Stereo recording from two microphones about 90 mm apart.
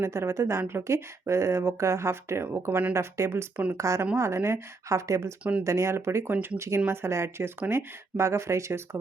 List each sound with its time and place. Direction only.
0.0 s speech: 30° right (ahead or behind)
5.4 s speech: 15° right (ahead or behind)
5.6 s speech: 35° right (ahead or behind)